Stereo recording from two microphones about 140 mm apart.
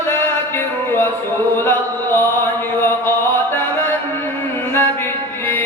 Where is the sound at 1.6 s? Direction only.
15° left (ahead or behind).